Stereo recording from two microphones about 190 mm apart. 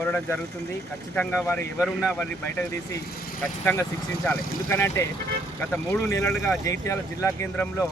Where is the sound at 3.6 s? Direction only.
10° left (ahead or behind).